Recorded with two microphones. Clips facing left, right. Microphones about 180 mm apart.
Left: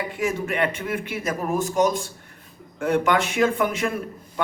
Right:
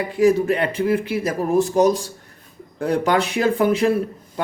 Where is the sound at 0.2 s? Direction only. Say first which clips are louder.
Right 8 dB; 35° right (ahead or behind).